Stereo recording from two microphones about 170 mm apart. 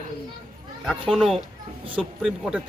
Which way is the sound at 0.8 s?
Centre (ahead or behind).